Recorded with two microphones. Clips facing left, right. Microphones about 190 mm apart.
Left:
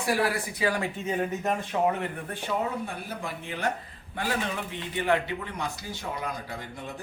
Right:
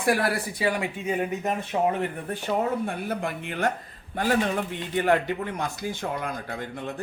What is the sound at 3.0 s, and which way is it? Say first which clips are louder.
Speech: right 6 dB; 60° right (ahead or behind).